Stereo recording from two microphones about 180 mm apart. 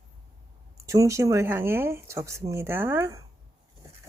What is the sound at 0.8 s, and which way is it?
Speech, 15° right (ahead or behind).